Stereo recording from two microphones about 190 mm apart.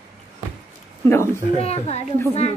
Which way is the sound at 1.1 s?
15° left (ahead or behind).